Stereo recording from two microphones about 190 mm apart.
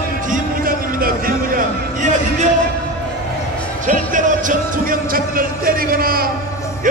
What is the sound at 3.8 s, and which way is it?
Music, 45° right (ahead or behind).